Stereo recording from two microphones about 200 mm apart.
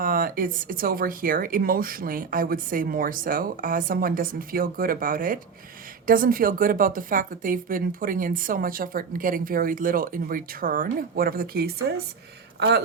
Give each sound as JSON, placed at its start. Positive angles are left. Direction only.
{"t": 0.0, "sound": "a woman's voice", "side_deg": -45}